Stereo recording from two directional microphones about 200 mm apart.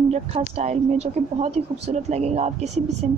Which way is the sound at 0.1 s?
35° right (ahead or behind).